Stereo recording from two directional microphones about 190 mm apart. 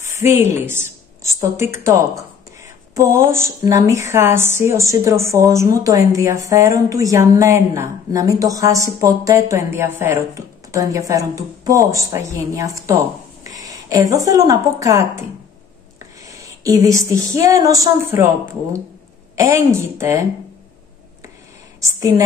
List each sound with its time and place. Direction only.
0.1 s a woman's voice: 15° right (ahead or behind)
21.8 s a woman's voice: 15° right (ahead or behind)